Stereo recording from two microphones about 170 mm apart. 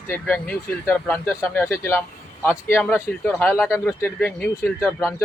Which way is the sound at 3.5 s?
5° right (ahead or behind).